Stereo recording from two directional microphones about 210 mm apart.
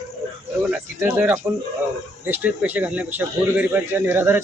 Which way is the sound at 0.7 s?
5° right (ahead or behind).